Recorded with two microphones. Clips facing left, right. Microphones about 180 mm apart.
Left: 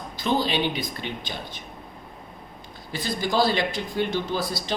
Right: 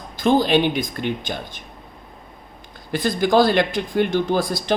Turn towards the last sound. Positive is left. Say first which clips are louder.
# right 7 dB
turn(degrees=-50)  # may be behind; listen again after turning